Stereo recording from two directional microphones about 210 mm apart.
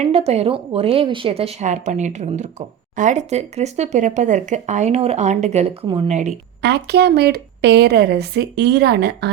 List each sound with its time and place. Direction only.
0.0 s a woman's voice: 30° right (ahead or behind)
6.6 s speech: 55° right (ahead or behind)